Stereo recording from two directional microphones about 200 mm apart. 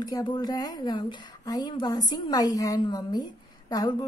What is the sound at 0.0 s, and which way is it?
A woman's voice, 20° left (ahead or behind).